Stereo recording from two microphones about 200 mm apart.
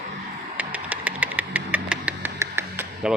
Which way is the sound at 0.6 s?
5° right (ahead or behind).